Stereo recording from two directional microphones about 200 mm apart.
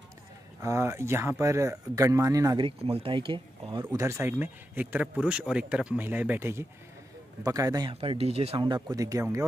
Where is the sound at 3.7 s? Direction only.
15° right (ahead or behind).